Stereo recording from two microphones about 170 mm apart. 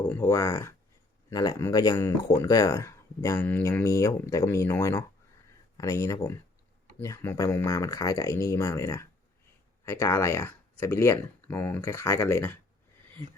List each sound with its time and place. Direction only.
0.1 s speech: 15° left (ahead or behind)